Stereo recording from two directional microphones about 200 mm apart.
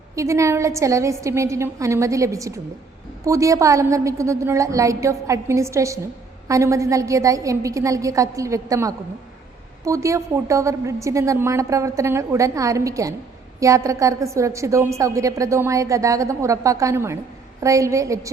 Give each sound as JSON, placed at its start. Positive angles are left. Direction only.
{"t": 0.2, "sound": "a woman's voice", "side_deg": -15}